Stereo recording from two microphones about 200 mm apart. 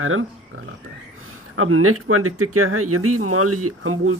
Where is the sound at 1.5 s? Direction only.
90° right.